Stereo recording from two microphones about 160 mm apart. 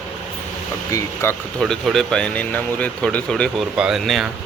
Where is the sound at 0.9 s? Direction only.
20° left (ahead or behind).